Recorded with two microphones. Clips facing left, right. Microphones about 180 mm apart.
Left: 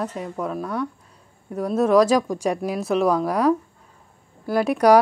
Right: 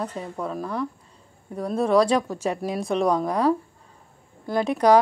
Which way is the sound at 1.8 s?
30° right (ahead or behind).